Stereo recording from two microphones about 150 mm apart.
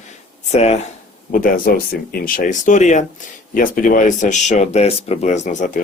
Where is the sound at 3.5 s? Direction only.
65° left (ahead or behind).